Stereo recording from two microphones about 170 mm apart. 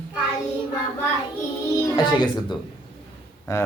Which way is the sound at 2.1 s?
25° left (ahead or behind).